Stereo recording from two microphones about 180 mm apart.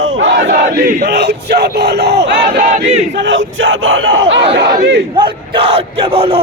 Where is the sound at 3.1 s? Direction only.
85° right.